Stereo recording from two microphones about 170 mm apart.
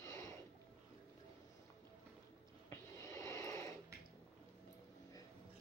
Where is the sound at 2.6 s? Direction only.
15° left (ahead or behind).